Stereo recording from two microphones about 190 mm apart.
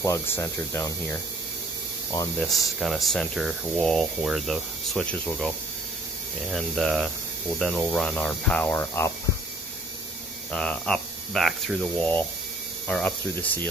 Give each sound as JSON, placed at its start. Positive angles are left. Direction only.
{"t": 0.0, "sound": "speech", "side_deg": 15}
{"t": 2.4, "sound": "speech", "side_deg": 0}
{"t": 6.5, "sound": "speech", "side_deg": 0}
{"t": 10.5, "sound": "speech", "side_deg": 5}